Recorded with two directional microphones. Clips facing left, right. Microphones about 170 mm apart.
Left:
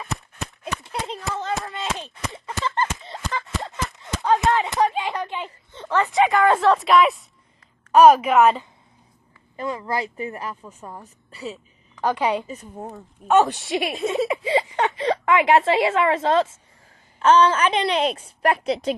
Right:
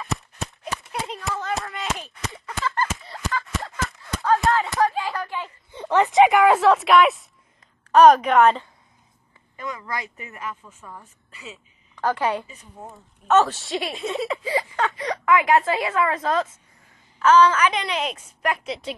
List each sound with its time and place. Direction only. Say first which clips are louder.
0.8 s a sound: even; 30° left (ahead or behind)
5.7 s speech: right 3 dB; 15° right (ahead or behind)
6.4 s a woman's voice: right 1 dB; centre (ahead or behind)
9.6 s a woman's voice: left 5 dB; 30° left (ahead or behind)
12.0 s a woman's voice: left 1 dB; 15° left (ahead or behind); by 18.9 s 40° left (ahead or behind)